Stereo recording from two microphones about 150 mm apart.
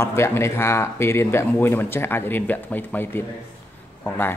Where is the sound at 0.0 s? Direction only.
20° left (ahead or behind).